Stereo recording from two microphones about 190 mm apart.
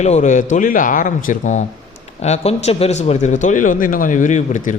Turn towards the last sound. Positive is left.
turn(degrees=40)  # may be behind; listen again after turning